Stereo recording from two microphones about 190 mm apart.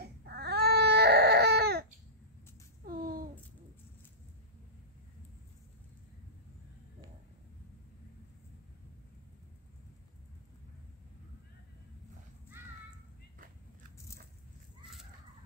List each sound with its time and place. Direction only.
0.0 s baby cry: 55° right (ahead or behind)